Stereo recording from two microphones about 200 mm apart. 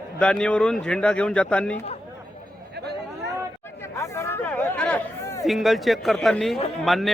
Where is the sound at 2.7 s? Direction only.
55° right (ahead or behind).